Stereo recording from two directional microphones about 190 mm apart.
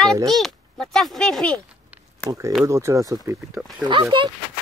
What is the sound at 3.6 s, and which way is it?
Speech, centre (ahead or behind).